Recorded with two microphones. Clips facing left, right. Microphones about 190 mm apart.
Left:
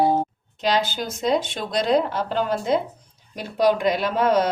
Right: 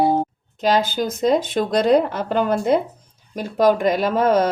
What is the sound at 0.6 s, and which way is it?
Speech, 45° right (ahead or behind).